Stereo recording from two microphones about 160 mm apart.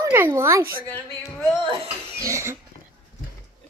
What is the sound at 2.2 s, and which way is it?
Speech, 20° right (ahead or behind).